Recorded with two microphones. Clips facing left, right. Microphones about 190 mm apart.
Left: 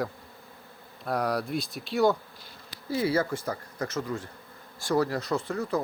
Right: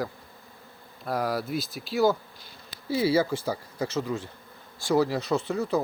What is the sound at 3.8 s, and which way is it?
Speech, 25° right (ahead or behind).